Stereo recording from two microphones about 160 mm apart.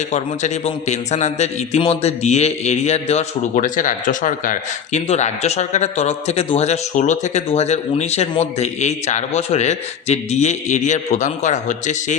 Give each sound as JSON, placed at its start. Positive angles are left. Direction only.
{"t": 0.1, "sound": "a man's voice", "side_deg": 45}